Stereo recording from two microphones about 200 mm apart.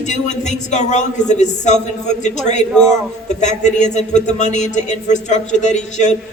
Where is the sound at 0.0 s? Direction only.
35° left (ahead or behind).